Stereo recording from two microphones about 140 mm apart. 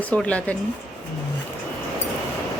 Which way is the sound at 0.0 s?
10° left (ahead or behind).